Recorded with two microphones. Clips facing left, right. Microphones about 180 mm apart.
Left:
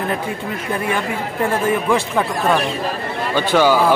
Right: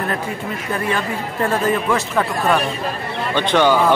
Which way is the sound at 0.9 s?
15° left (ahead or behind).